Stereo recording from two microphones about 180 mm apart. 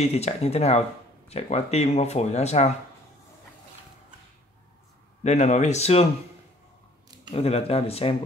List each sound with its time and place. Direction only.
0.0 s speech: 35° left (ahead or behind)
5.2 s speech: 40° left (ahead or behind)
7.2 s speech: 35° left (ahead or behind)